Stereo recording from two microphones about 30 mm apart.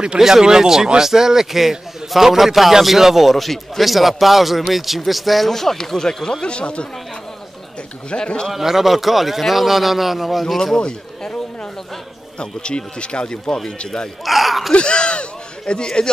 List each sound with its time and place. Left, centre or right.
0.2 s a man's voice: centre
5.5 s speech: centre
6.4 s speech: left
8.1 s speech: left
8.5 s speech: centre
10.8 s a sound: left
12.4 s speech: left
14.2 s speech: centre
14.7 s a sound: left